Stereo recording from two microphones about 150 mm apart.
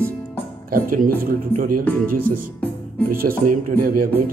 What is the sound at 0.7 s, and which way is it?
Speech, 70° right (ahead or behind).